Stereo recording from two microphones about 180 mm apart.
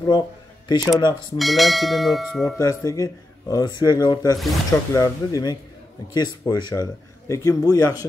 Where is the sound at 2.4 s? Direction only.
20° left (ahead or behind).